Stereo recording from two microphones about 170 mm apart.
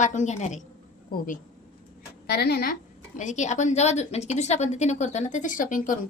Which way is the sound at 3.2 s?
45° left (ahead or behind).